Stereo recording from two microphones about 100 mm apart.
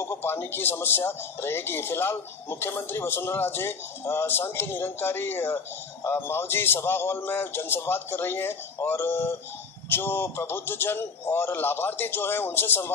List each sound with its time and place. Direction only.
0.0 s a man's voice: 25° left (ahead or behind)